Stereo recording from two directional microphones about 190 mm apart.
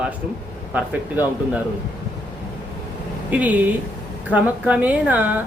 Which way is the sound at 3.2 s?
10° right (ahead or behind).